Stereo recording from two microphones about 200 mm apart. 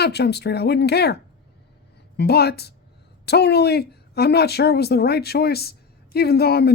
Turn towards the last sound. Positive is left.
turn(degrees=50)  # may be behind; listen again after turning